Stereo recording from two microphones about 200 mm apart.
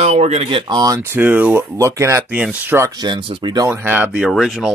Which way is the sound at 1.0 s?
10° right (ahead or behind).